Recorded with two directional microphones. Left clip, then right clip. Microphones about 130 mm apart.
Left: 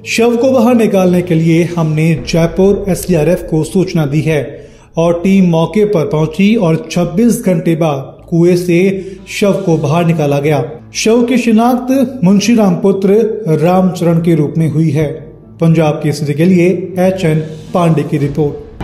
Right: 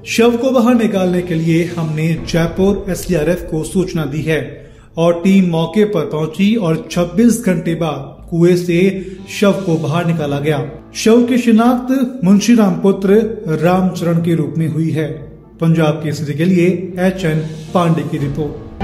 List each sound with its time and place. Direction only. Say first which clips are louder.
0.1 s a man's voice: left 3 dB; 35° left (ahead or behind)